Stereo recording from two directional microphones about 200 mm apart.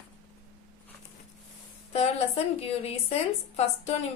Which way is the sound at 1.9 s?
30° left (ahead or behind).